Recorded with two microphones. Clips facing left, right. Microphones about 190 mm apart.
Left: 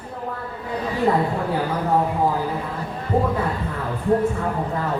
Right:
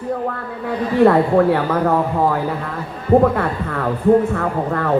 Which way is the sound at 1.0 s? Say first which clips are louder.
Right 9 dB; 70° right (ahead or behind).